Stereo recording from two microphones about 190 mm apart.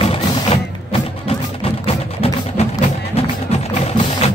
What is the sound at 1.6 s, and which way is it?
Music, 30° left (ahead or behind).